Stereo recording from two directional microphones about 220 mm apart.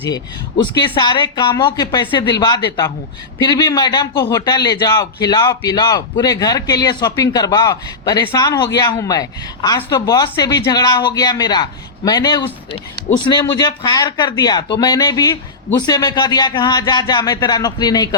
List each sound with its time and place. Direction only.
0.6 s a man's voice: 20° left (ahead or behind)